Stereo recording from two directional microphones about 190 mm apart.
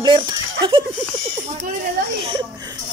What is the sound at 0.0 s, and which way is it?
Speech, 25° right (ahead or behind).